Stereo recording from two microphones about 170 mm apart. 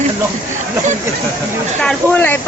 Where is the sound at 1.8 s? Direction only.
5° left (ahead or behind).